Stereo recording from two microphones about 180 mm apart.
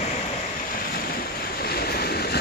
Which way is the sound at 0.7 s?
55° left (ahead or behind).